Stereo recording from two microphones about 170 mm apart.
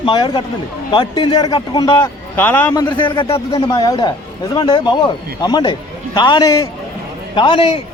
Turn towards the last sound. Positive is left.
turn(degrees=30)  # may be behind; listen again after turning